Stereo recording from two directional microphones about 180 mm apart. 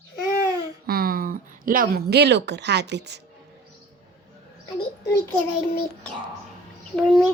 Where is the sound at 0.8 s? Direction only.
55° right (ahead or behind).